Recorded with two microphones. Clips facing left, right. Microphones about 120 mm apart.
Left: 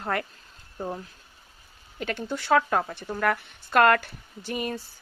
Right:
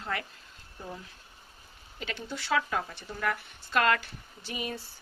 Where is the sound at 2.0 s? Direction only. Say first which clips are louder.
Left 7 dB; 50° left (ahead or behind).